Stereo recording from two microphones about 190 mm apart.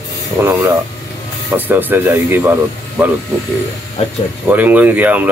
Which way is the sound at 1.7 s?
10° right (ahead or behind).